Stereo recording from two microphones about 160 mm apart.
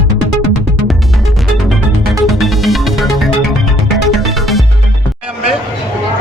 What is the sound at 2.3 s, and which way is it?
Music, centre (ahead or behind).